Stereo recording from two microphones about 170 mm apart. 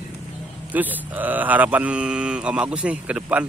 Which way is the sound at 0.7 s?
10° right (ahead or behind).